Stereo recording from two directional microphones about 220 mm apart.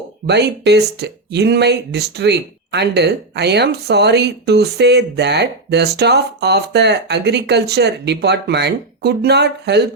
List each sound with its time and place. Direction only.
0.3 s speech: 50° right (ahead or behind)